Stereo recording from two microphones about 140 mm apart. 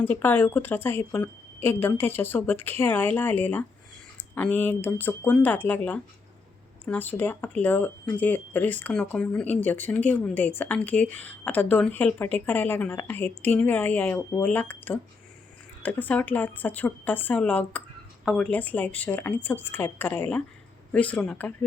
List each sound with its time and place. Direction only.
0.0 s speech: 15° left (ahead or behind)